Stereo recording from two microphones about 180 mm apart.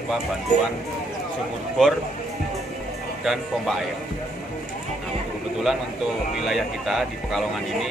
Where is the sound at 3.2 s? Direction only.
Centre (ahead or behind).